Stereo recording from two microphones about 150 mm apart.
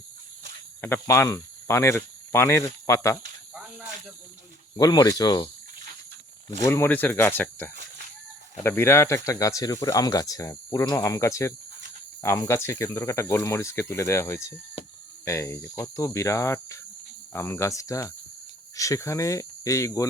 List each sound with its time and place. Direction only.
0.8 s cricket: 15° left (ahead or behind)
3.5 s snake: 5° right (ahead or behind)
4.8 s speech: 25° left (ahead or behind)
6.6 s speech: 20° left (ahead or behind)